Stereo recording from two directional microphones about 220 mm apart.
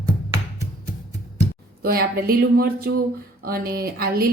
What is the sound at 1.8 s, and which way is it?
Speech, 45° right (ahead or behind).